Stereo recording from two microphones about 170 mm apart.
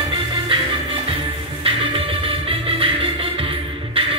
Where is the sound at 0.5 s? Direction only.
30° right (ahead or behind).